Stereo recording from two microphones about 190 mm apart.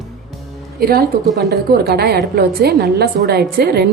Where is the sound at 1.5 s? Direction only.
60° right (ahead or behind).